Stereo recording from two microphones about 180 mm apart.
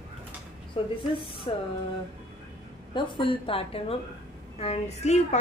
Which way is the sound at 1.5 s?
30° left (ahead or behind).